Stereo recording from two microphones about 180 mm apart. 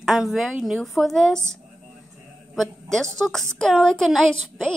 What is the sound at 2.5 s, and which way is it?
A woman's voice, centre (ahead or behind).